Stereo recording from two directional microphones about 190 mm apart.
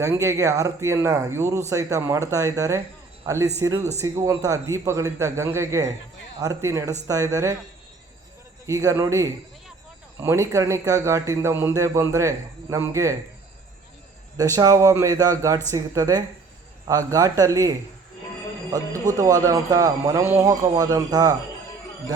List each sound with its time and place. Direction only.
0.0 s speech: 15° right (ahead or behind)
8.6 s speech: 15° right (ahead or behind)
14.3 s speech: 20° right (ahead or behind)